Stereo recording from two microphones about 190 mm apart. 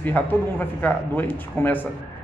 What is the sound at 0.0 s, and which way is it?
A man's voice, 10° left (ahead or behind).